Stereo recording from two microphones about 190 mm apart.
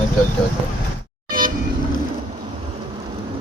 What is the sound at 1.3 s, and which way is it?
Vehicle, 50° right (ahead or behind).